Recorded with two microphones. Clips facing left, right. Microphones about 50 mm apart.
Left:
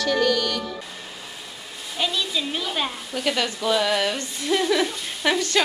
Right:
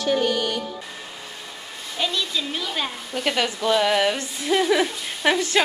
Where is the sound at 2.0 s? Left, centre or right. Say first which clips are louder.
Even; centre.